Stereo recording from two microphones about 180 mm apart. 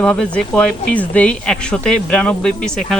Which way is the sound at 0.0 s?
5° left (ahead or behind).